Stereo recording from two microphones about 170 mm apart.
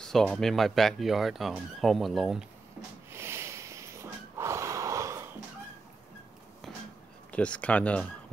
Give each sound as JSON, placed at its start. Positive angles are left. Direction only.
{"t": 0.0, "sound": "speech", "side_deg": 5}
{"t": 3.1, "sound": "snort", "side_deg": -15}
{"t": 7.3, "sound": "speech", "side_deg": 5}